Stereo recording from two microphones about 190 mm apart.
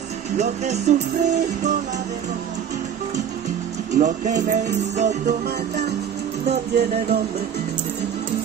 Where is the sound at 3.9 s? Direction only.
40° right (ahead or behind).